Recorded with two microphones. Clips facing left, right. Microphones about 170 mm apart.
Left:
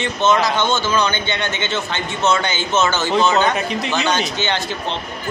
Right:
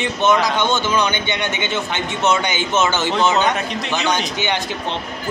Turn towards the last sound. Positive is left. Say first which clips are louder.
# even
turn(degrees=-15)  # may be behind; listen again after turning